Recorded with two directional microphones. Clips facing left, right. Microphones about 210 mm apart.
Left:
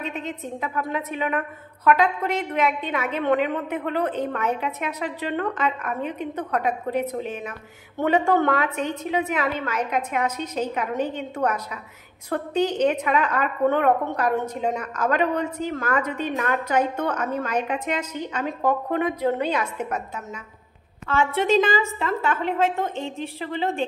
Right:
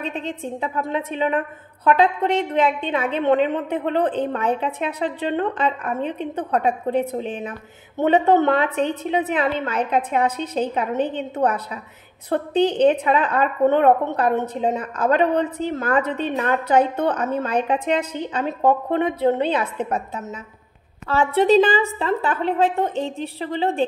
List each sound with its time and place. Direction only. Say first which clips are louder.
0.0 s a woman's voice: right 3 dB; 30° right (ahead or behind)
21.1 s a woman's voice: right 4 dB; 35° right (ahead or behind)